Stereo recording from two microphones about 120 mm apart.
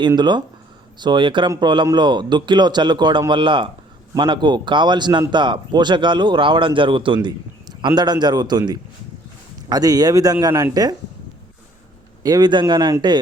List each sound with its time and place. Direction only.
0.2 s a man's voice: 40° right (ahead or behind)
12.2 s speech: 35° right (ahead or behind)